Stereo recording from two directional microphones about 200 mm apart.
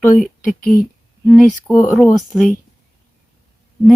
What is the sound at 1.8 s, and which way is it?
Speech, centre (ahead or behind).